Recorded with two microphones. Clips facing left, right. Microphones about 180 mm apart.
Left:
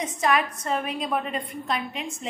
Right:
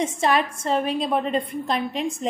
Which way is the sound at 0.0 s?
30° right (ahead or behind).